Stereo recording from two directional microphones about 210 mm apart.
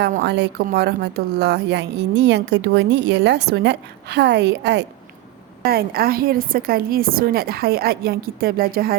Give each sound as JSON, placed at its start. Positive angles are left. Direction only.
{"t": 0.0, "sound": "a woman's voice", "side_deg": -50}